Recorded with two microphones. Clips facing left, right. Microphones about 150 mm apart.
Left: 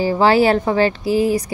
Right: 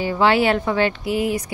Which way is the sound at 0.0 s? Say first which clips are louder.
Left 4 dB; 35° left (ahead or behind).